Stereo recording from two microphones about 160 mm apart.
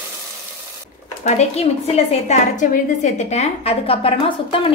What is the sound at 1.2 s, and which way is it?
A woman's voice, 45° left (ahead or behind).